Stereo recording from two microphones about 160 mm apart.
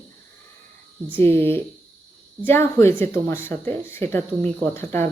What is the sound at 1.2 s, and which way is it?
Speech, 15° left (ahead or behind).